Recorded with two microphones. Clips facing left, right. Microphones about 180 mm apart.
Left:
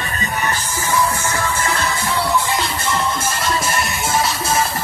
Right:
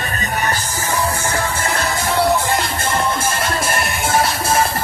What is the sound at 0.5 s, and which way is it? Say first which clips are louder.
Music: left 1 dB; 35° right (ahead or behind).